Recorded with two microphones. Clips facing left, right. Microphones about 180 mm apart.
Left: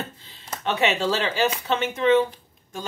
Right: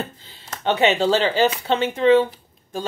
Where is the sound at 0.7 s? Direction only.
30° right (ahead or behind).